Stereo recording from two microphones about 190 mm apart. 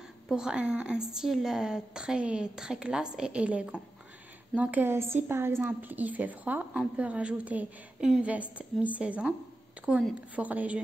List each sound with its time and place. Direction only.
0.3 s a woman's voice: 5° right (ahead or behind)